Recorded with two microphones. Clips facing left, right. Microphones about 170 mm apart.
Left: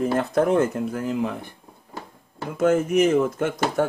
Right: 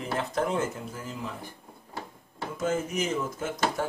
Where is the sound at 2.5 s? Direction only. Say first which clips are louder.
Left 10 dB; 65° left (ahead or behind).